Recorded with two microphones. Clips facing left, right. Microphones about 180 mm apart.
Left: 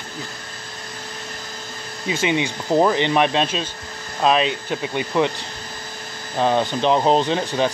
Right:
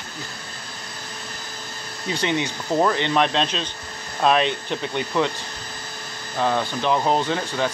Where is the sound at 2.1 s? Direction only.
10° left (ahead or behind).